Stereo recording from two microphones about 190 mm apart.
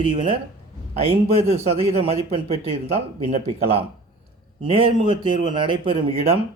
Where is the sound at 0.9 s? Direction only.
30° right (ahead or behind).